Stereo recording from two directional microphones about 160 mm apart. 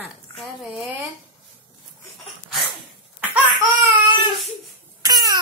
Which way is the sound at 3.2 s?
10° right (ahead or behind).